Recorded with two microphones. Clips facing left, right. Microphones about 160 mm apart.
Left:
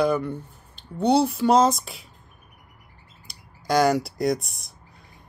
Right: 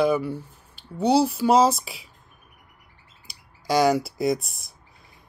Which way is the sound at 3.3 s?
Centre (ahead or behind).